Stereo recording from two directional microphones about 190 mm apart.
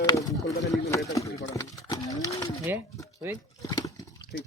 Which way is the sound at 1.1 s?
20° left (ahead or behind).